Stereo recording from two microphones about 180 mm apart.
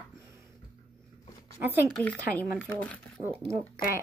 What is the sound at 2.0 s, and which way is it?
Speech, 10° left (ahead or behind).